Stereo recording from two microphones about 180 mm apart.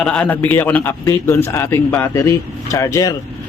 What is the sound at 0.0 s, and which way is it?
A man's voice, 5° left (ahead or behind).